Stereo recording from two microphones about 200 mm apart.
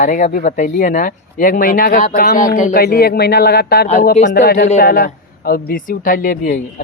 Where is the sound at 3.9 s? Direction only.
40° left (ahead or behind).